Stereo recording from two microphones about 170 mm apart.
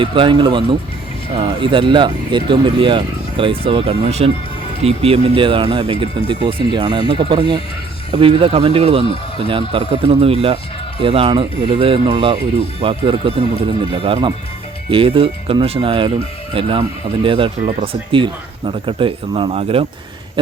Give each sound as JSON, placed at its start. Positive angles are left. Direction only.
{"t": 0.0, "sound": "speech", "side_deg": -30}